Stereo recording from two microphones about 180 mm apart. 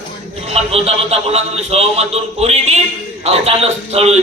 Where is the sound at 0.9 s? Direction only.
35° right (ahead or behind).